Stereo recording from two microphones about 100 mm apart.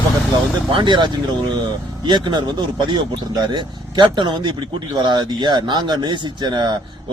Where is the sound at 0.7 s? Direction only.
50° right (ahead or behind).